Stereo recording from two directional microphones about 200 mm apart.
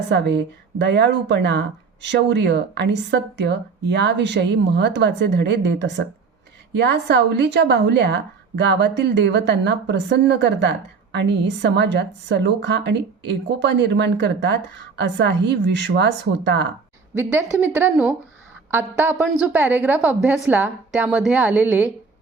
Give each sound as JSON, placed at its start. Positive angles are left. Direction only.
{"t": 0.1, "sound": "a woman's voice", "side_deg": -60}
{"t": 17.2, "sound": "a woman's voice", "side_deg": -10}